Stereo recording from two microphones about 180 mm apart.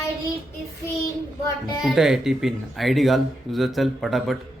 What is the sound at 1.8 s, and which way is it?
Speech, 5° right (ahead or behind).